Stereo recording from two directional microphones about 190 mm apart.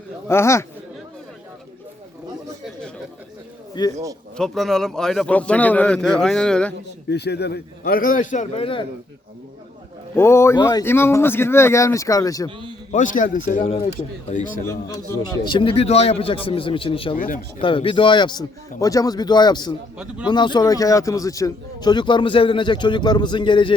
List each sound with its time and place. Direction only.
0.3 s speech: 15° left (ahead or behind)
3.8 s a man's voice: 25° left (ahead or behind)
4.4 s a man's voice: centre (ahead or behind)
7.1 s a man's voice: 60° left (ahead or behind); by 8.9 s 30° left (ahead or behind)
10.2 s speech: 15° left (ahead or behind)
12.9 s a man's voice: 45° left (ahead or behind)
14.6 s a man's voice: 15° left (ahead or behind)
17.2 s a man's voice: 45° left (ahead or behind)
17.6 s a man's voice: 25° left (ahead or behind)